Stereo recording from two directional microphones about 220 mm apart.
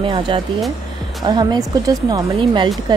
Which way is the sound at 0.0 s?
20° right (ahead or behind).